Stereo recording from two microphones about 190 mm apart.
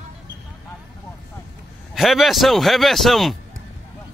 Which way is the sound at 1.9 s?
Centre (ahead or behind).